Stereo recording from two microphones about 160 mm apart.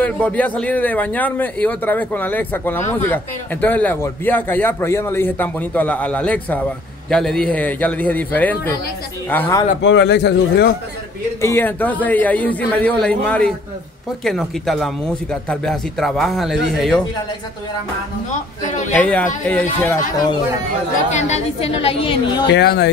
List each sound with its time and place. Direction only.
0.0 s a man's voice: 10° left (ahead or behind)
9.8 s speech: 90° left
11.4 s a man's voice: 15° left (ahead or behind)
18.9 s a man's voice: 10° left (ahead or behind)
21.1 s a woman's voice: 45° left (ahead or behind)
22.5 s speech: 90° left